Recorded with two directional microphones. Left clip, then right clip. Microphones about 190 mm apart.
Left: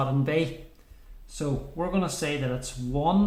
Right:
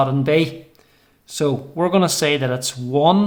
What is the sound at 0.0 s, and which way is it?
Speech, 25° right (ahead or behind).